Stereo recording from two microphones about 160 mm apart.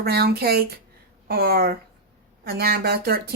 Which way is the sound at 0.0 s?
75° right (ahead or behind).